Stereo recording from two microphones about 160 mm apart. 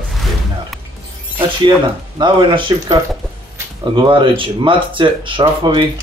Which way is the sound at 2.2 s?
30° right (ahead or behind).